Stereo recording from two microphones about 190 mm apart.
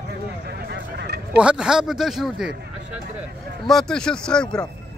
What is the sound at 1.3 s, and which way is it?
Speech, 5° right (ahead or behind).